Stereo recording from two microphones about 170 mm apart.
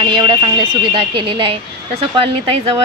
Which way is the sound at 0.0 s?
30° right (ahead or behind).